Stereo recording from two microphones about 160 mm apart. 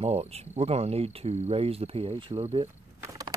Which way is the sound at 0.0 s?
40° right (ahead or behind).